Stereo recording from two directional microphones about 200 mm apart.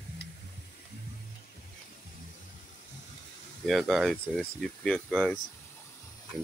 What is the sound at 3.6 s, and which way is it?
Speech, centre (ahead or behind).